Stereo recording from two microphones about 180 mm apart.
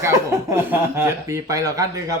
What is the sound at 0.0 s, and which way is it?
Speech, 15° right (ahead or behind).